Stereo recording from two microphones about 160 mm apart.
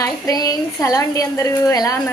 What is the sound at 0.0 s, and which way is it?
A woman's voice, 20° left (ahead or behind).